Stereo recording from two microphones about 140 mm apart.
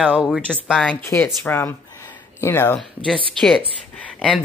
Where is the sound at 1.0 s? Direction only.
15° left (ahead or behind).